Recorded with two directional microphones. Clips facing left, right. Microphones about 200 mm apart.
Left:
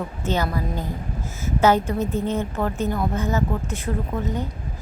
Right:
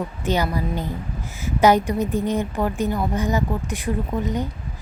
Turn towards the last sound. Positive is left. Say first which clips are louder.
# right 2 dB
turn(degrees=-15)  # may be behind; listen again after turning